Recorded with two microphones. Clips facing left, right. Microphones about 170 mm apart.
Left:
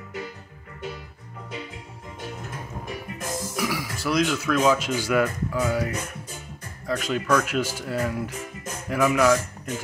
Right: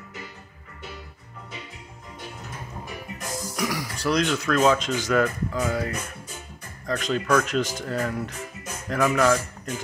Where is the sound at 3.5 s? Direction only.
5° left (ahead or behind).